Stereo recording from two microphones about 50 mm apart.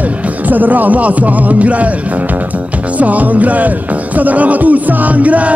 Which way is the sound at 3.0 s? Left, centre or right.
Right.